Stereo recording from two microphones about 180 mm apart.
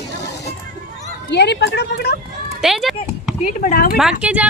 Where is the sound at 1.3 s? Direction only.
70° left (ahead or behind).